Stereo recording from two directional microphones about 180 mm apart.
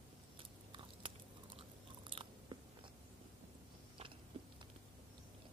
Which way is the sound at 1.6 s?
30° right (ahead or behind).